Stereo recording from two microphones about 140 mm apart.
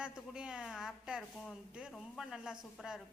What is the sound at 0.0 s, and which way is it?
A woman's voice, 5° right (ahead or behind).